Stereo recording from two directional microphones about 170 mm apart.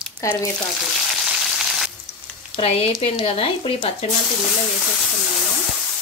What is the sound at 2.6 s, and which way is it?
Speech, 35° left (ahead or behind).